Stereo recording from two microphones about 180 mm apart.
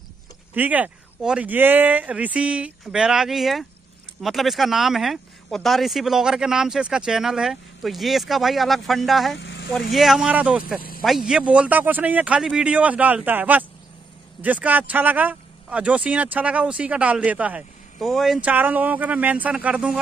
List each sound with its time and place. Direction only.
0.6 s speech: 10° right (ahead or behind)
9.4 s vehicle: 80° left
9.8 s speech: centre (ahead or behind)